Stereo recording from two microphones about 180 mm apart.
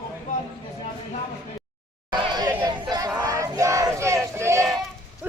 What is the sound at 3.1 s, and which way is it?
Crowd, 20° right (ahead or behind).